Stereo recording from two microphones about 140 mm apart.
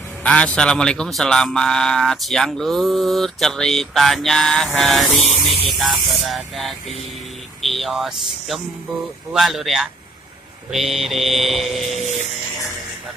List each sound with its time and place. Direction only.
0.2 s a man's voice: 10° left (ahead or behind)
5.2 s music: 50° left (ahead or behind)
5.7 s a man's voice: centre (ahead or behind)